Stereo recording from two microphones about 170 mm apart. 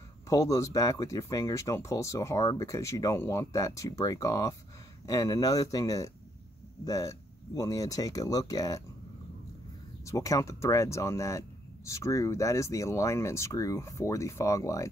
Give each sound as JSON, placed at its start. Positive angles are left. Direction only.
{"t": 0.3, "sound": "speech", "side_deg": 20}
{"t": 10.0, "sound": "speech", "side_deg": 20}